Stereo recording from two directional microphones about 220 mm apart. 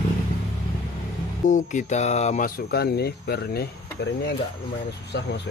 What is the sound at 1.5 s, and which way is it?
Speech, 35° left (ahead or behind).